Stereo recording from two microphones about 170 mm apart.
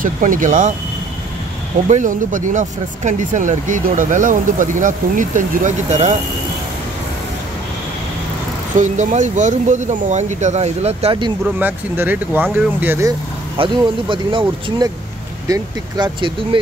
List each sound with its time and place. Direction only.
0.0 s speech: 50° right (ahead or behind)
1.9 s speech: 45° right (ahead or behind)
8.7 s speech: 45° right (ahead or behind)
11.6 s speech: 10° right (ahead or behind)
13.6 s speech: 30° right (ahead or behind)
15.4 s speech: 25° right (ahead or behind)